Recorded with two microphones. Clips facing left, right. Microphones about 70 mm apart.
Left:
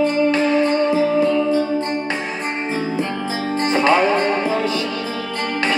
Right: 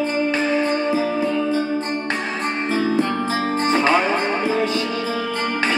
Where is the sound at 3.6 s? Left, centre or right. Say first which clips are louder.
Left 3 dB; right.